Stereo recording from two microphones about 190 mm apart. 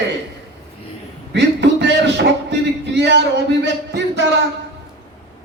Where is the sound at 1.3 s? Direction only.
65° right (ahead or behind).